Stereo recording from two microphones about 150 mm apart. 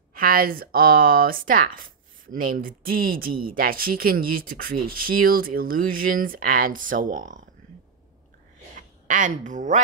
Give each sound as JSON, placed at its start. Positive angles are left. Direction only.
{"t": 0.1, "sound": "speech", "side_deg": -75}
{"t": 8.7, "sound": "a woman's voice", "side_deg": -60}